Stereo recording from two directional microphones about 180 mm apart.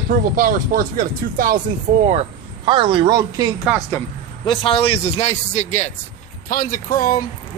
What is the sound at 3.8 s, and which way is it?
Speech, 15° left (ahead or behind).